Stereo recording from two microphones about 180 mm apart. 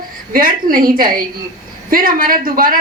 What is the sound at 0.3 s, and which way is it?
A woman's voice, 55° right (ahead or behind).